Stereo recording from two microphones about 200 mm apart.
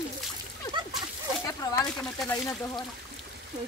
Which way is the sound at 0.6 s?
20° left (ahead or behind).